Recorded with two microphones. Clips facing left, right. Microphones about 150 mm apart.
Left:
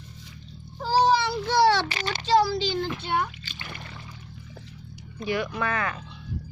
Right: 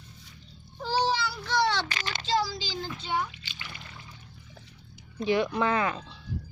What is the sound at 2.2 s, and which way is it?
A child's voice, 60° left (ahead or behind).